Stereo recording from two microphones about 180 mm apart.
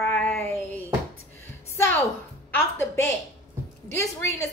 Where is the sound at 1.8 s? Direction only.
15° left (ahead or behind).